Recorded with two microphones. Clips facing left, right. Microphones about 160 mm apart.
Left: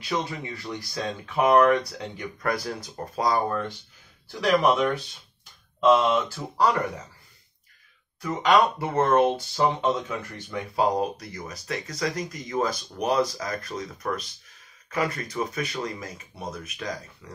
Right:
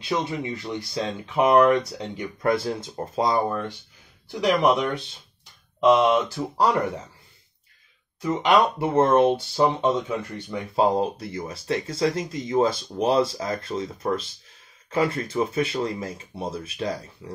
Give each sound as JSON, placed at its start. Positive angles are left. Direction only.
{"t": 0.0, "sound": "speech", "side_deg": -20}
{"t": 5.8, "sound": "speech", "side_deg": -15}
{"t": 8.2, "sound": "speech", "side_deg": -20}